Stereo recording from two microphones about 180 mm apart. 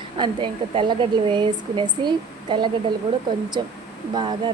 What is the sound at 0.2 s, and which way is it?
A woman's voice, 30° right (ahead or behind).